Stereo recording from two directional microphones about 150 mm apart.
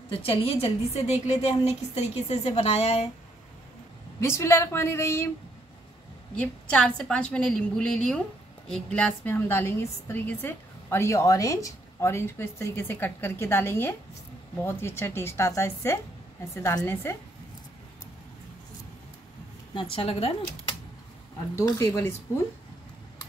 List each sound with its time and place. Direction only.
0.2 s a woman's voice: 40° left (ahead or behind)
4.2 s a woman's voice: 15° left (ahead or behind)
6.4 s a woman's voice: 5° left (ahead or behind)
19.7 s a woman's voice: 35° left (ahead or behind)
21.5 s speech: 20° left (ahead or behind)